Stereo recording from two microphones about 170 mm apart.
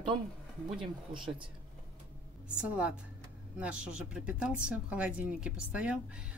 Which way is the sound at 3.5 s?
5° right (ahead or behind).